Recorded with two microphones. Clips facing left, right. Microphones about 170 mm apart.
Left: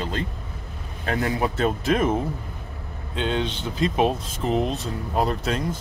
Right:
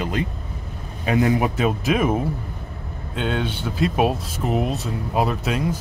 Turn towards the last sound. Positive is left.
turn(degrees=-5)  # may be behind; listen again after turning